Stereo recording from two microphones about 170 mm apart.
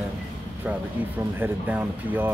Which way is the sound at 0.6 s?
10° right (ahead or behind).